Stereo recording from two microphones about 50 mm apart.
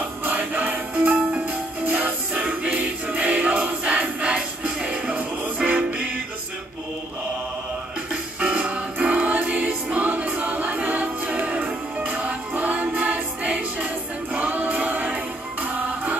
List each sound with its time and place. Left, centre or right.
0.2 s music: right
8.1 s music: right
14.3 s choir: right